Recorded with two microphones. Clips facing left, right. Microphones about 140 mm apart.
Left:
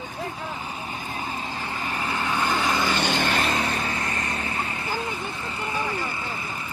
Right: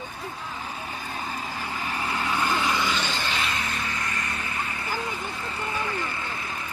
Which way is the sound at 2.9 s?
60° left (ahead or behind).